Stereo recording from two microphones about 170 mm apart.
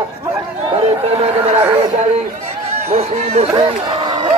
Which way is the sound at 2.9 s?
35° right (ahead or behind).